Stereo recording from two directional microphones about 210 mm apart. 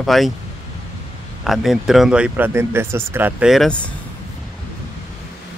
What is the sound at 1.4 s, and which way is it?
Speech, centre (ahead or behind).